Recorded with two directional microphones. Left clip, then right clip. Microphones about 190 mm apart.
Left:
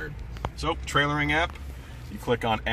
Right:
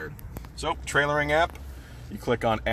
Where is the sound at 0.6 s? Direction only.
55° right (ahead or behind).